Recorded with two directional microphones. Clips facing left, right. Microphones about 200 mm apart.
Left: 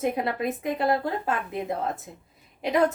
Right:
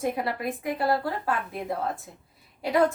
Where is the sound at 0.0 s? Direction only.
20° left (ahead or behind).